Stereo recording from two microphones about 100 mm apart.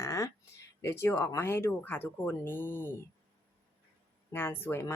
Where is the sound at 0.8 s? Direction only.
25° left (ahead or behind).